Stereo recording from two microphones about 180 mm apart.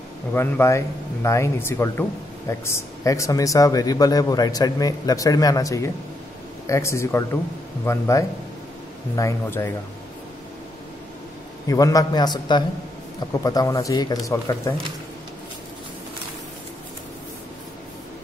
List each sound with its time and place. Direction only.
0.3 s speech: 10° left (ahead or behind)
11.6 s speech: 20° left (ahead or behind)